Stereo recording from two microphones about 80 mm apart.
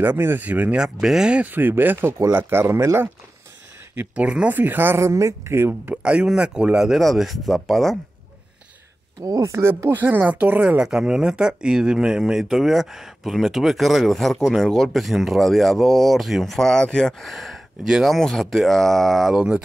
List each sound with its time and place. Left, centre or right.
0.0 s speech: right
1.5 s speech: right
2.0 s speech: right
3.9 s speech: right
4.6 s speech: right
6.0 s speech: centre
9.2 s speech: right
10.0 s speech: right
10.8 s speech: centre
17.8 s speech: centre
18.1 s speech: centre